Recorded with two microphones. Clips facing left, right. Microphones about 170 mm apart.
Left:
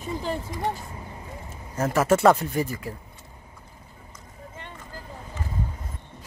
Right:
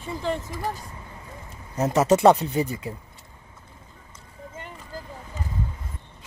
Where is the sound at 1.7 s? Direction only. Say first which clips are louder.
Right 2 dB; 20° right (ahead or behind).